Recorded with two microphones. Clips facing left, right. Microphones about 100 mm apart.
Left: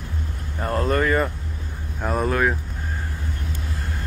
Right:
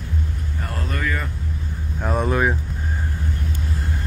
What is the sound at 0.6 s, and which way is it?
Speech, 35° left (ahead or behind).